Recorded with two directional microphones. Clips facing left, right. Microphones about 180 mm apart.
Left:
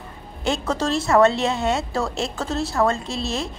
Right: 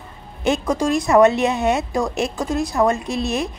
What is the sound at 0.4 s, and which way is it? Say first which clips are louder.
A woman's voice: right 4 dB; 15° right (ahead or behind).